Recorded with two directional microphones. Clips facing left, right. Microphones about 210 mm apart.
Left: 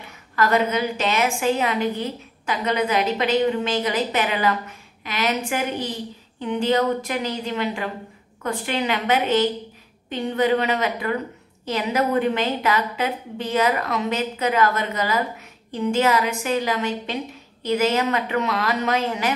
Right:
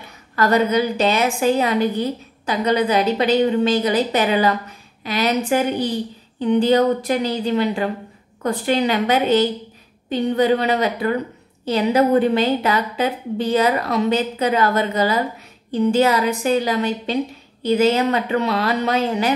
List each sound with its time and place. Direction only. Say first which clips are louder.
0.4 s a woman's voice: right 4 dB; 35° right (ahead or behind)